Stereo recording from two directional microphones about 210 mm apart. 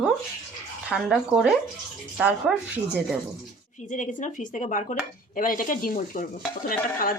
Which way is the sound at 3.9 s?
35° left (ahead or behind).